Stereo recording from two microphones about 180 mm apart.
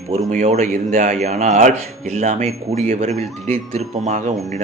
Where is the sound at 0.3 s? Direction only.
40° right (ahead or behind).